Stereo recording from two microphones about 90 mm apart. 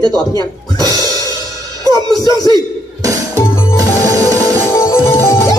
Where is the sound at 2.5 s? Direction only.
40° right (ahead or behind).